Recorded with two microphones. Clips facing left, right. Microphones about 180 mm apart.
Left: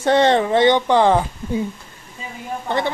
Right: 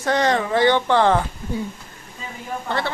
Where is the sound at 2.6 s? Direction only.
20° left (ahead or behind).